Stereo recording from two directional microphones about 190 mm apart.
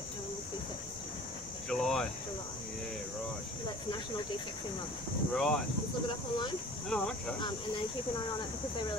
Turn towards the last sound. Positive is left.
turn(degrees=5)  # may be behind; listen again after turning